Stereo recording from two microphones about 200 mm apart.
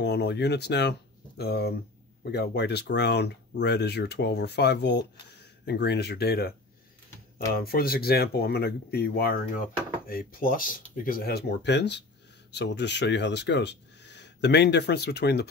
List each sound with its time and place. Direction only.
0.0 s speech: 55° left (ahead or behind)
7.5 s speech: 50° left (ahead or behind)